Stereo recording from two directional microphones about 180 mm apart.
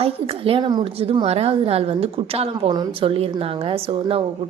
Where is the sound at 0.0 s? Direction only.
30° right (ahead or behind).